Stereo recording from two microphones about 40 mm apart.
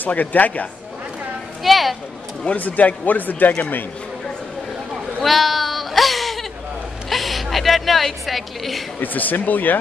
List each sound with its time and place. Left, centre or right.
0.0 s speech: left
1.6 s speech: centre
2.5 s speech: left
4.9 s a sound: centre
9.0 s speech: left